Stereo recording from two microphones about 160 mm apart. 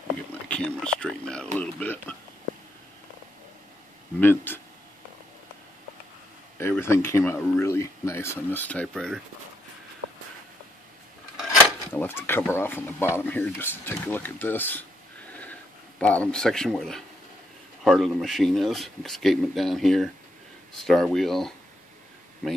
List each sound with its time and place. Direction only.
0.3 s speech: 10° left (ahead or behind)
4.2 s speech: 15° left (ahead or behind)
6.8 s speech: 15° left (ahead or behind)
11.9 s speech: 15° left (ahead or behind)
16.0 s speech: 10° left (ahead or behind)